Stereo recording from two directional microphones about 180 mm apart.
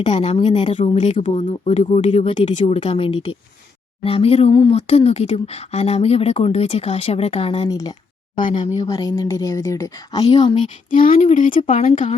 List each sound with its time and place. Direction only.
0.1 s speech: 40° left (ahead or behind)
0.3 s speech: 25° left (ahead or behind)
1.2 s speech: 40° left (ahead or behind); by 10.2 s 20° left (ahead or behind)
10.8 s speech: 50° left (ahead or behind)